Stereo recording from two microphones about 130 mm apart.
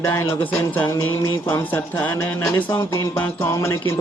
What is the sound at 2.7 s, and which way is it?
Music, 25° left (ahead or behind).